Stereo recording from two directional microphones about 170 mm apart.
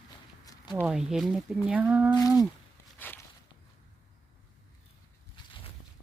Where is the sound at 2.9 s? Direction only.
10° left (ahead or behind).